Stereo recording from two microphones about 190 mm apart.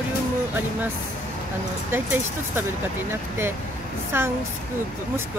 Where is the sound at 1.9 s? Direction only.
10° right (ahead or behind).